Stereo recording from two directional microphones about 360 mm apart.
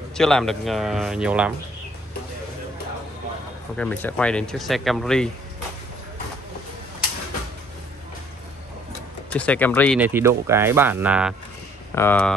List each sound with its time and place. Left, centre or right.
0.1 s speech: centre
3.7 s speech: centre
9.3 s speech: centre